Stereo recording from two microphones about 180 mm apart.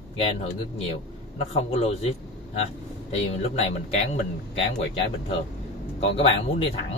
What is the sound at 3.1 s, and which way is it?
Speech, 35° left (ahead or behind).